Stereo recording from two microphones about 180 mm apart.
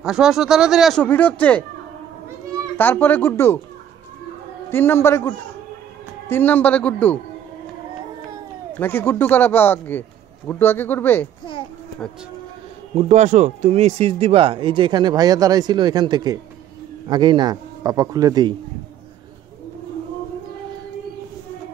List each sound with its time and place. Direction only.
0.0 s speech: 5° right (ahead or behind)
2.8 s speech: 10° left (ahead or behind)
4.6 s speech: 15° left (ahead or behind)
8.7 s speech: 10° left (ahead or behind)
12.9 s speech: 40° right (ahead or behind); by 18.5 s 20° right (ahead or behind)